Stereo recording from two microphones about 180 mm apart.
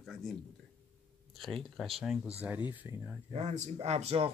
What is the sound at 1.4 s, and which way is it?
A man's voice, centre (ahead or behind).